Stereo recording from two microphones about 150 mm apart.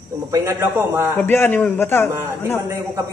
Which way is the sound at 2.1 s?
15° right (ahead or behind).